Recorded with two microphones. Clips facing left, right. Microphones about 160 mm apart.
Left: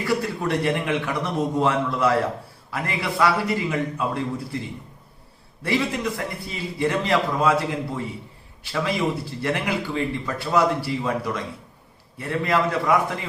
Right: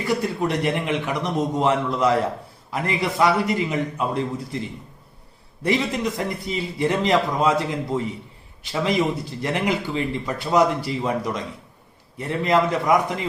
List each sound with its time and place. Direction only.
0.0 s a man's voice: 20° right (ahead or behind)
5.6 s a man's voice: 20° right (ahead or behind)